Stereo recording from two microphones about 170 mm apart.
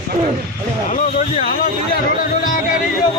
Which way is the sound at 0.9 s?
40° left (ahead or behind).